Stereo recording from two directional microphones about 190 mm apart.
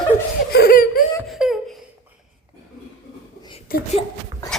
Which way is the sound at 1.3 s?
Centre (ahead or behind).